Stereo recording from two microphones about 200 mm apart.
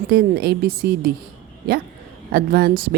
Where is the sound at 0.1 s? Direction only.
50° right (ahead or behind).